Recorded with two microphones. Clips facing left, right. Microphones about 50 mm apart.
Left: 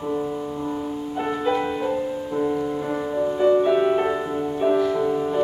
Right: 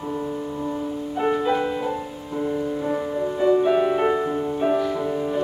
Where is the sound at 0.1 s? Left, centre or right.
Centre.